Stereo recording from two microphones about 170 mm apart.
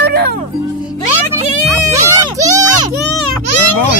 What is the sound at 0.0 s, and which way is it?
Music, 70° right (ahead or behind).